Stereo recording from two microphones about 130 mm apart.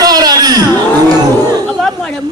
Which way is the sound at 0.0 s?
30° right (ahead or behind).